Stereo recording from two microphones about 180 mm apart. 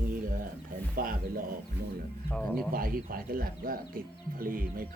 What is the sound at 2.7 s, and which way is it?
A man's voice, 55° right (ahead or behind).